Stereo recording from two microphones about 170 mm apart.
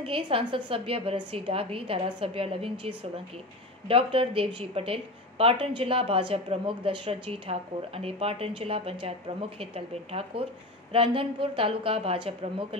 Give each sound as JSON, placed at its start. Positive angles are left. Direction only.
{"t": 0.0, "sound": "a woman's voice", "side_deg": -30}